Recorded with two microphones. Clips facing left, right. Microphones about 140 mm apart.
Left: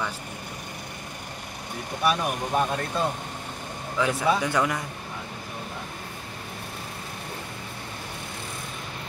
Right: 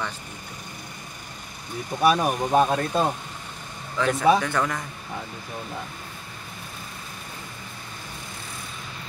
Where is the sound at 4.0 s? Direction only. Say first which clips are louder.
Right 4 dB; 10° left (ahead or behind).